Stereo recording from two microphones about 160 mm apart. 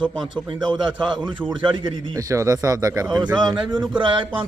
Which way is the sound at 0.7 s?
30° right (ahead or behind).